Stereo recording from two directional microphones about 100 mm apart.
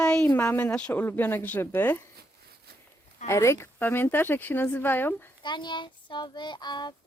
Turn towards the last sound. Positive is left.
turn(degrees=45)  # may be behind; listen again after turning